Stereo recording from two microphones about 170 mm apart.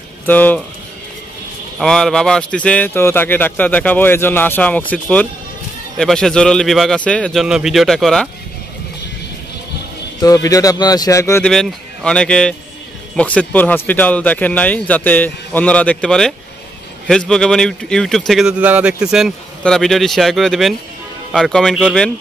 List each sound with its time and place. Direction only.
0.3 s speech: 10° left (ahead or behind)
1.8 s speech: 5° left (ahead or behind)
10.2 s speech: 20° left (ahead or behind)
11.4 s speech: 5° left (ahead or behind)